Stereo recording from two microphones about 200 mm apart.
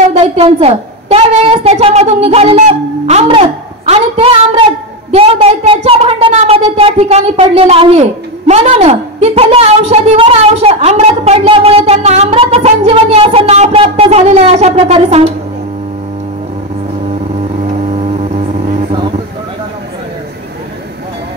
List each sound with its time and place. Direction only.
0.1 s a woman's voice: 30° right (ahead or behind)
17.6 s vehicle: 30° right (ahead or behind)